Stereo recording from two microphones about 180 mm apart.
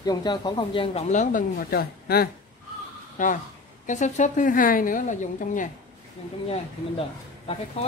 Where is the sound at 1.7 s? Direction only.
60° left (ahead or behind).